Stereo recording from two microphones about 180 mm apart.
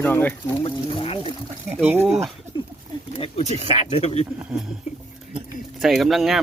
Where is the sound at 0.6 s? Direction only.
30° left (ahead or behind).